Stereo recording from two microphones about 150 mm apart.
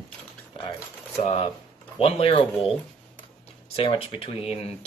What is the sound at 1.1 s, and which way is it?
Speech, 40° left (ahead or behind).